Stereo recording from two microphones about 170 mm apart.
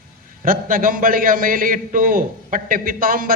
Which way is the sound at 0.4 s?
55° right (ahead or behind).